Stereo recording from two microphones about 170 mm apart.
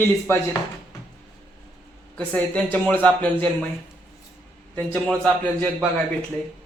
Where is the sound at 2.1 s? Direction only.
5° left (ahead or behind).